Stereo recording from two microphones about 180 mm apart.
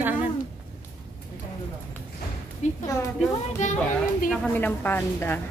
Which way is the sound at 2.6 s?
40° left (ahead or behind).